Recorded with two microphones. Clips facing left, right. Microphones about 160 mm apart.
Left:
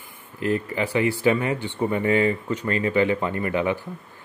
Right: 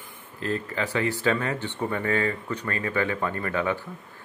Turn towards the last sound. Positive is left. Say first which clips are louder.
# left 3 dB
turn(degrees=15)  # may be behind; listen again after turning